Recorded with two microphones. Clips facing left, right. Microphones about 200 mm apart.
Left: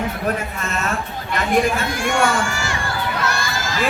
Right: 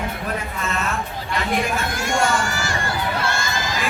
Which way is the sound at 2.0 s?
40° right (ahead or behind).